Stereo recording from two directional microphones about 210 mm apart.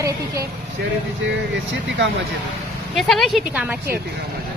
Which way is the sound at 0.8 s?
50° right (ahead or behind).